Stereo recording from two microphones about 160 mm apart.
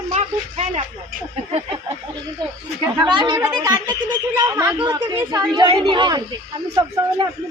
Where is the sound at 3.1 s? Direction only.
30° right (ahead or behind).